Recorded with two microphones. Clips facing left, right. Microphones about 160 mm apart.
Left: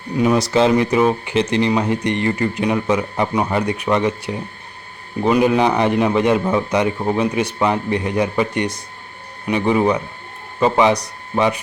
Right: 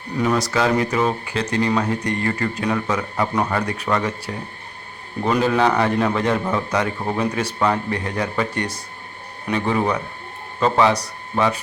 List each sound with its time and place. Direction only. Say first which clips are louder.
0.3 s a man's voice: left 5 dB; 25° left (ahead or behind)